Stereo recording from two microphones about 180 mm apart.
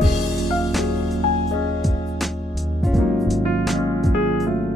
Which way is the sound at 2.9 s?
Centre (ahead or behind).